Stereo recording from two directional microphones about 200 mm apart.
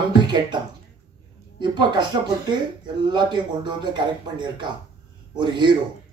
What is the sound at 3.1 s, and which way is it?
A man's voice, 20° right (ahead or behind).